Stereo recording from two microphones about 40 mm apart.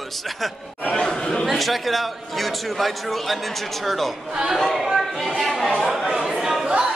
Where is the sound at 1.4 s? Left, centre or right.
Centre.